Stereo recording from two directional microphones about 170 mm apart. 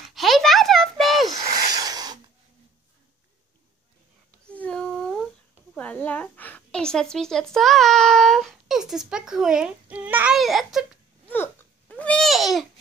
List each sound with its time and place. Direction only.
0.1 s a sound: centre (ahead or behind)
1.6 s filing: 20° right (ahead or behind)
4.5 s humming: 5° left (ahead or behind)
5.8 s a woman's voice: 10° left (ahead or behind)
11.2 s babbling: 10° left (ahead or behind)